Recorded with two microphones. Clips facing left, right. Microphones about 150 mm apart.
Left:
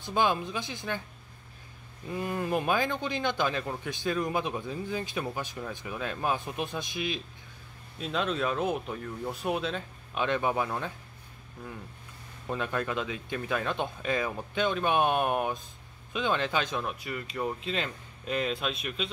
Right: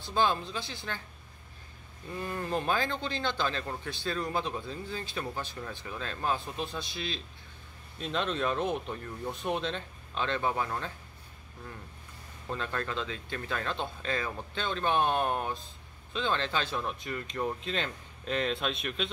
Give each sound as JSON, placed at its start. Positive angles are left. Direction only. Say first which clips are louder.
{"t": 0.0, "sound": "a man's voice", "louder": "left 1 dB", "side_deg": 15}
{"t": 2.1, "sound": "a man's voice", "louder": "left 3 dB", "side_deg": 15}
{"t": 8.0, "sound": "speech", "louder": "left 1 dB", "side_deg": 5}
{"t": 12.4, "sound": "a man's voice", "louder": "left 3 dB", "side_deg": 15}